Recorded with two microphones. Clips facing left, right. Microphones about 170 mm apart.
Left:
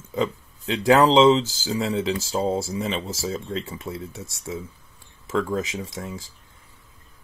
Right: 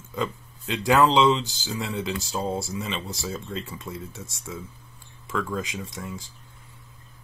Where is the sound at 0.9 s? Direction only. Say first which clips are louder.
Left 4 dB; 25° left (ahead or behind).